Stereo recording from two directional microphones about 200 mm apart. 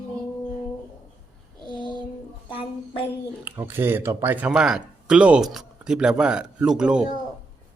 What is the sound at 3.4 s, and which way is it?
Speech, 10° right (ahead or behind).